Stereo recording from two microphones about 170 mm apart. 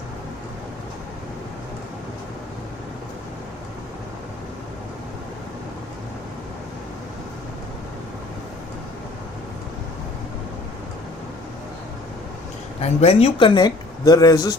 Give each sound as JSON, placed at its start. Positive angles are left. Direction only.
{"t": 12.8, "sound": "speech", "side_deg": 35}